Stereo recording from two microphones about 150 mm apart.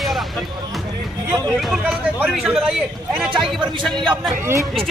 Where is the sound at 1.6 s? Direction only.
5° right (ahead or behind).